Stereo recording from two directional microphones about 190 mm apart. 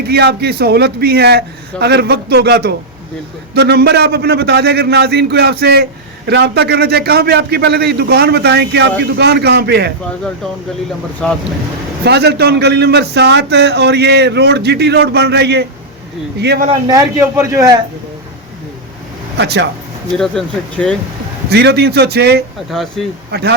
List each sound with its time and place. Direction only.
0.1 s a man's voice: 55° right (ahead or behind)
11.2 s speech: 5° left (ahead or behind)
12.0 s a man's voice: 60° right (ahead or behind)
16.6 s a man's voice: 20° right (ahead or behind)
19.4 s a man's voice: 65° right (ahead or behind)
20.1 s speech: 5° left (ahead or behind)
21.5 s a man's voice: 60° right (ahead or behind)
22.7 s speech: centre (ahead or behind)
23.3 s a man's voice: 60° right (ahead or behind)